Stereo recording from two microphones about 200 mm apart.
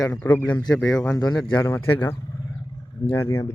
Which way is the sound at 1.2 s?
20° left (ahead or behind).